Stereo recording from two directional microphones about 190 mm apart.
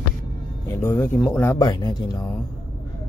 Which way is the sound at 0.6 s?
10° left (ahead or behind).